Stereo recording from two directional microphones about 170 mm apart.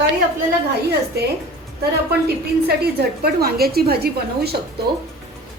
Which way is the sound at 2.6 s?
65° right (ahead or behind).